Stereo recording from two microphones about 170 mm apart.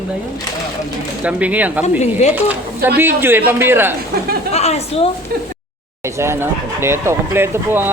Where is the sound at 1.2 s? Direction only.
10° right (ahead or behind).